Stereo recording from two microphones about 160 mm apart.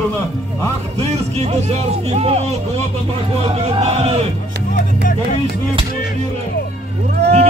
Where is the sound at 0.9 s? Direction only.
45° right (ahead or behind).